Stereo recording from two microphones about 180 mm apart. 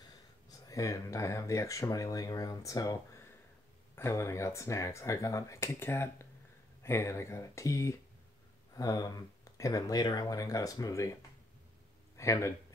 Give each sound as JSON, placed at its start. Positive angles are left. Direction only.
{"t": 0.5, "sound": "speech", "side_deg": 20}
{"t": 12.2, "sound": "speech", "side_deg": 15}